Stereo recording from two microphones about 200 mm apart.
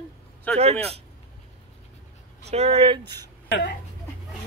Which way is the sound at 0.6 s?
30° right (ahead or behind).